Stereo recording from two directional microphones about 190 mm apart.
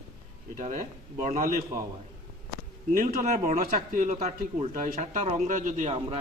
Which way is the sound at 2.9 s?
45° right (ahead or behind).